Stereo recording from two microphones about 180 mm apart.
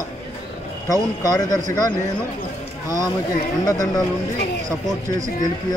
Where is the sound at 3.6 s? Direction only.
20° left (ahead or behind).